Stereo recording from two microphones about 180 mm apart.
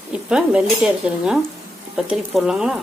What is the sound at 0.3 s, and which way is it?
Stir, 5° right (ahead or behind).